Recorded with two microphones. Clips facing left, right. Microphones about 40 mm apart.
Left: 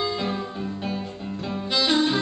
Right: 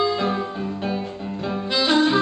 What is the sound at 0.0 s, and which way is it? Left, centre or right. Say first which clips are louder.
Music: right 5 dB; centre.